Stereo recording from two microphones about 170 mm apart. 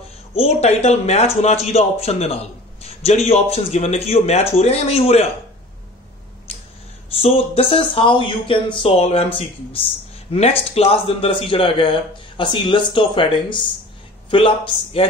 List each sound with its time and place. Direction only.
0.3 s speech: 35° left (ahead or behind)
7.2 s speech: 35° left (ahead or behind)
10.3 s speech: 35° left (ahead or behind)